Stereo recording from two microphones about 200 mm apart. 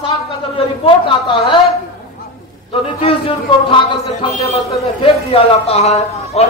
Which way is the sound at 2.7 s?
30° left (ahead or behind).